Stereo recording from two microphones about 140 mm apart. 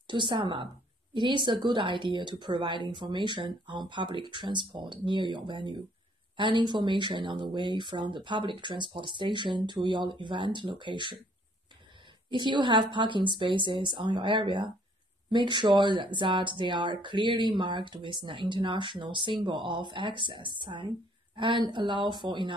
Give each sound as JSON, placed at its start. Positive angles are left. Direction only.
{"t": 0.0, "sound": "a woman's voice", "side_deg": -35}
{"t": 12.3, "sound": "a woman's voice", "side_deg": -35}